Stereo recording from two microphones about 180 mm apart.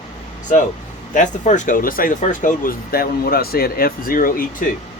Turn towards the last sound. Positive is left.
turn(degrees=50)  # may be behind; listen again after turning